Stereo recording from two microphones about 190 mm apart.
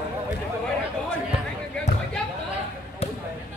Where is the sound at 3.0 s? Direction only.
35° left (ahead or behind).